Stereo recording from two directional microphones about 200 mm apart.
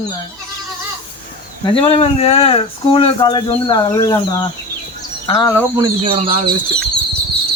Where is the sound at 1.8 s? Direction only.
30° left (ahead or behind); by 5.7 s 15° left (ahead or behind).